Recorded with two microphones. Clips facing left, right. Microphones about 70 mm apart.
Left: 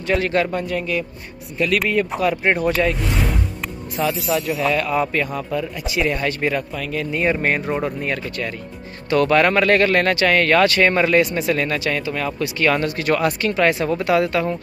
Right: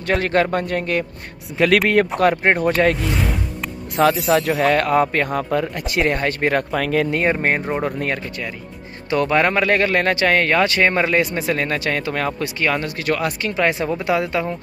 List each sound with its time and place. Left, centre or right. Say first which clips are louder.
0.0 s speech: right 1 dB; right
1.6 s speech: right 4 dB; right
2.1 s speech: right 3 dB; right
2.4 s speech: right 1 dB; right
3.9 s speech: right 5 dB; right
6.5 s speech: right 5 dB; right
7.2 s speech: right 1 dB; right
9.1 s speech: left 2 dB; centre; by 12.4 s right
12.7 s speech: left 2 dB; centre
13.5 s speech: even; centre